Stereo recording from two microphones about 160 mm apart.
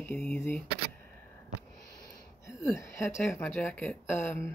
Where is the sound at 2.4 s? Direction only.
15° left (ahead or behind).